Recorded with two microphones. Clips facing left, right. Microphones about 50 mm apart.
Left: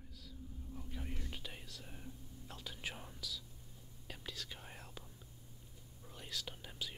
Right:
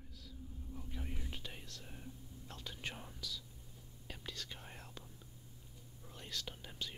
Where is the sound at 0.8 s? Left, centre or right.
Centre.